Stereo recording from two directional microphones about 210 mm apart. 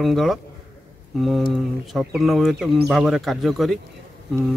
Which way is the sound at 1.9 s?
Centre (ahead or behind).